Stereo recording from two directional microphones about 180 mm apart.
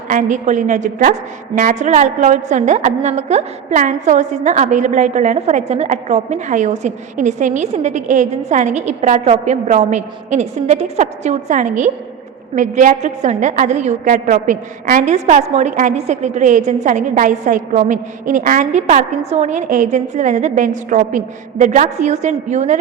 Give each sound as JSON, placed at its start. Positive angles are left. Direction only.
{"t": 0.1, "sound": "a woman's voice", "side_deg": -45}